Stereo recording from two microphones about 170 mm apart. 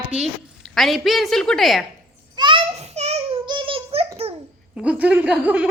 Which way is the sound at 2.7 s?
40° right (ahead or behind).